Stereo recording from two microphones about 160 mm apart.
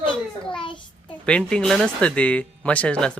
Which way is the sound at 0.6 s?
30° left (ahead or behind).